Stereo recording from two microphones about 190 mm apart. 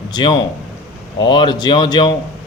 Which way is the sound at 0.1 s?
20° left (ahead or behind).